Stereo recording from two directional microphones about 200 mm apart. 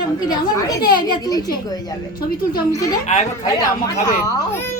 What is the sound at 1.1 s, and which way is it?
Speech, 20° left (ahead or behind).